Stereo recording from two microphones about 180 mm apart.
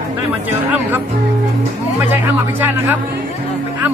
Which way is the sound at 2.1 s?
10° right (ahead or behind).